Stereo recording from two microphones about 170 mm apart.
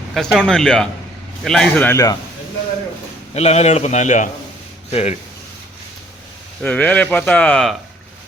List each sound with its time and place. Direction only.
0.1 s speech: centre (ahead or behind); by 2.1 s 15° left (ahead or behind)
3.3 s a man's voice: 40° left (ahead or behind)
6.6 s speech: 10° left (ahead or behind)